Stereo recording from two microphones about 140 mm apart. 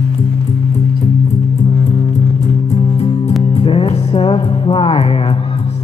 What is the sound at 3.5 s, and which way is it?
Music, 40° left (ahead or behind).